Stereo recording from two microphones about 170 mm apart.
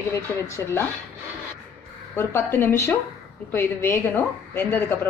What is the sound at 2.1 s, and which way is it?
A woman's voice, 15° left (ahead or behind).